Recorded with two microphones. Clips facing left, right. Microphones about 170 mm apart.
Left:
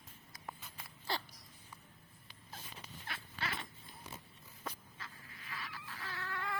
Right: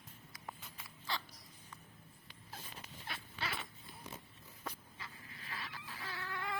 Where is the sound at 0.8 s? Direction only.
35° left (ahead or behind).